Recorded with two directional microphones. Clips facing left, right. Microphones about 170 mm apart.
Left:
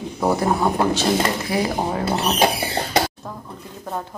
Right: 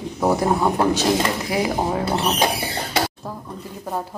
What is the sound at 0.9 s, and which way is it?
Speech, 15° right (ahead or behind).